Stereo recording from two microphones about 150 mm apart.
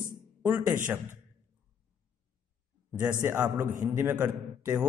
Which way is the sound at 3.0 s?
15° right (ahead or behind).